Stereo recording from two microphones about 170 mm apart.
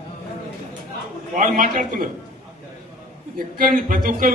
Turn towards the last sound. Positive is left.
turn(degrees=-55)  # may be behind; listen again after turning